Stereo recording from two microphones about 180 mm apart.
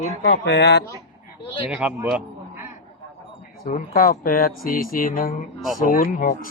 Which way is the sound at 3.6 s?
55° left (ahead or behind).